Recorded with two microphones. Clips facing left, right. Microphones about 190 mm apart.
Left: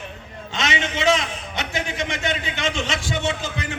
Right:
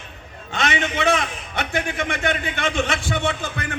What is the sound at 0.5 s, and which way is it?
A man's voice, 55° right (ahead or behind).